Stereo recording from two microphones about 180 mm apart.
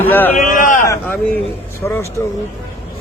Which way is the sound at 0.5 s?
50° left (ahead or behind).